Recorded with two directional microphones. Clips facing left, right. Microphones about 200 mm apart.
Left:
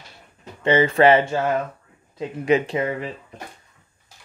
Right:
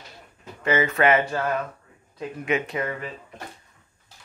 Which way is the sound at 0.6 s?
30° left (ahead or behind).